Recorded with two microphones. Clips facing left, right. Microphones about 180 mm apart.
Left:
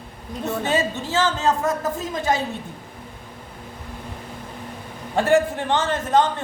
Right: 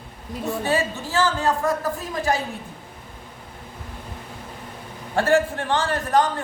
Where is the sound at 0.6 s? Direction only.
20° left (ahead or behind).